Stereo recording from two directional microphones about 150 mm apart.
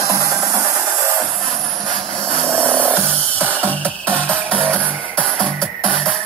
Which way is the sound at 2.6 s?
10° right (ahead or behind).